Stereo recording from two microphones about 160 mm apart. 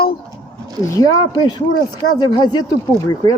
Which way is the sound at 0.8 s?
20° left (ahead or behind).